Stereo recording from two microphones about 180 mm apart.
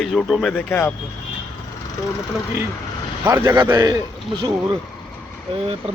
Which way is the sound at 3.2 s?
20° right (ahead or behind).